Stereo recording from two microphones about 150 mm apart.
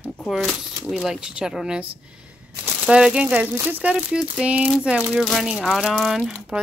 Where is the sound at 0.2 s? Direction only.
Centre (ahead or behind).